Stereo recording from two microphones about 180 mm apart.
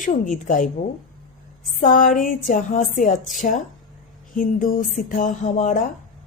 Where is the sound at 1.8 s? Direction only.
50° left (ahead or behind).